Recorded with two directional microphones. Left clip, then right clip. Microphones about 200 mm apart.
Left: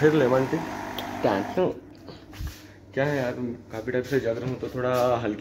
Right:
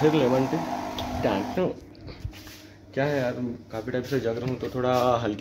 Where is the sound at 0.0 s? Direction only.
Centre (ahead or behind).